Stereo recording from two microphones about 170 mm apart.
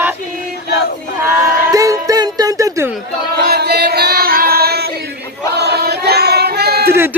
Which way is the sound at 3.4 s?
70° right (ahead or behind).